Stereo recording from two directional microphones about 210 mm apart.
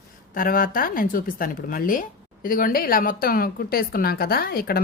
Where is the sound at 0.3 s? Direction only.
40° left (ahead or behind).